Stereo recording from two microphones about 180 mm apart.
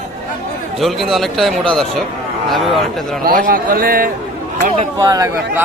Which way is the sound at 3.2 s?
50° right (ahead or behind).